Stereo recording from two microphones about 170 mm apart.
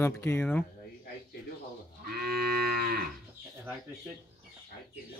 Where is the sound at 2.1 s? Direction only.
65° right (ahead or behind).